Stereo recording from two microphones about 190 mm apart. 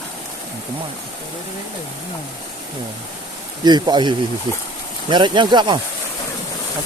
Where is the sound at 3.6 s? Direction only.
20° right (ahead or behind).